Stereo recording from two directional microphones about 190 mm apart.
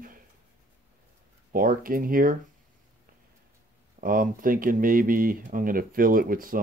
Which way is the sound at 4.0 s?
45° right (ahead or behind).